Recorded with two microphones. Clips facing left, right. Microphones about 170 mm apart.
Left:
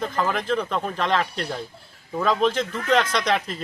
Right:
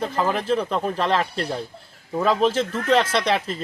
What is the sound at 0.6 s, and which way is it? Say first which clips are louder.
Speech: right 3 dB; 5° right (ahead or behind).